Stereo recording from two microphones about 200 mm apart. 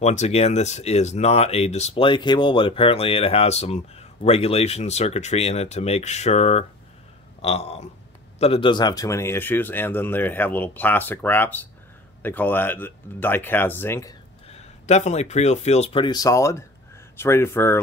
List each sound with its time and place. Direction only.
0.0 s speech: 35° left (ahead or behind); by 14.1 s 10° left (ahead or behind)
14.9 s speech: 35° left (ahead or behind); by 17.7 s 10° left (ahead or behind)